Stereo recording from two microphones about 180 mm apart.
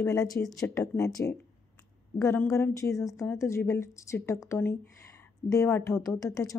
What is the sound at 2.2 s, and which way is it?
Speech, 15° left (ahead or behind).